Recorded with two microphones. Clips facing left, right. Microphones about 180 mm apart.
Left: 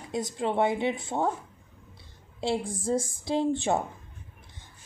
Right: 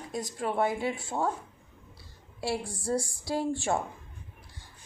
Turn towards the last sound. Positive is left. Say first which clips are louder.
# left 3 dB
turn(degrees=20)  # may be behind; listen again after turning